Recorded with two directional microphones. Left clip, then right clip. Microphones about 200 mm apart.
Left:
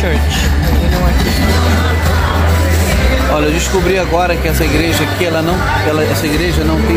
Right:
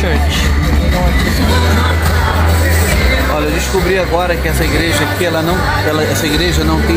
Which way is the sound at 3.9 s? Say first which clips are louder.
Left 1 dB; 40° left (ahead or behind).